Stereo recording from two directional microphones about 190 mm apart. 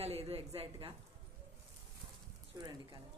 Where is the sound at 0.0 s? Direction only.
30° right (ahead or behind).